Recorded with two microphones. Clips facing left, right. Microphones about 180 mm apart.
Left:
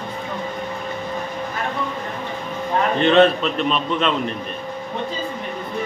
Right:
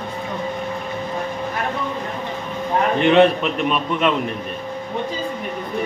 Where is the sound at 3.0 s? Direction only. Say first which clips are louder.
Even; 15° right (ahead or behind).